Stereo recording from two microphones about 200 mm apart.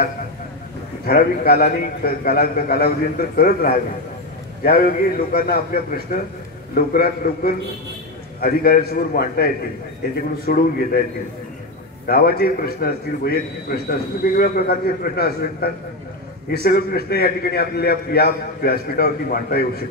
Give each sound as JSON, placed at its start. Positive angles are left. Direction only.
{"t": 1.0, "sound": "a man's voice", "side_deg": 50}
{"t": 12.1, "sound": "a man's voice", "side_deg": 50}